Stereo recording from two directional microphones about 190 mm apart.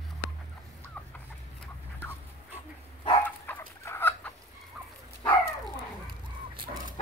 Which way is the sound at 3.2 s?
10° left (ahead or behind).